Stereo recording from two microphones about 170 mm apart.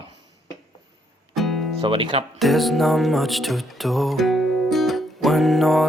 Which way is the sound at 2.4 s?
Centre (ahead or behind).